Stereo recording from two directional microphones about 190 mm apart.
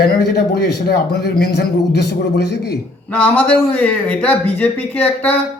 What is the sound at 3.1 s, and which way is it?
Speech, 10° left (ahead or behind).